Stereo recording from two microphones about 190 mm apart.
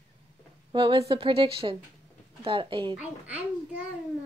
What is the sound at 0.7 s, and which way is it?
A woman's voice, 25° right (ahead or behind).